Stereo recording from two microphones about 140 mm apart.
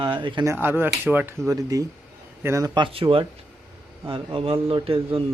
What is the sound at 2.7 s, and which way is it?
Speech, 35° right (ahead or behind).